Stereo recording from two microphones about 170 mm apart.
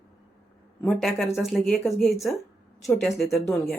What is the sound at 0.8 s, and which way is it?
Speech, 5° left (ahead or behind).